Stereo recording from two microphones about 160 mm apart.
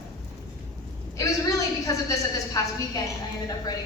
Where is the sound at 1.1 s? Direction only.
20° left (ahead or behind).